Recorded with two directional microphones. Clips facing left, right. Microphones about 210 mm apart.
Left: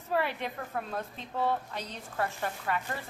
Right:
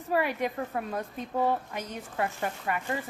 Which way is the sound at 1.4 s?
15° right (ahead or behind).